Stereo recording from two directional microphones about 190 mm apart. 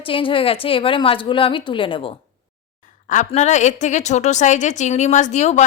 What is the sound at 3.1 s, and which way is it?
A woman's voice, 40° left (ahead or behind).